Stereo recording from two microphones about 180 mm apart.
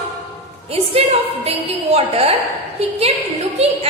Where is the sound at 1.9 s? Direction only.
35° right (ahead or behind).